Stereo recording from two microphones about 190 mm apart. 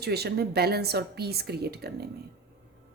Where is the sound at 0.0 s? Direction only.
55° right (ahead or behind).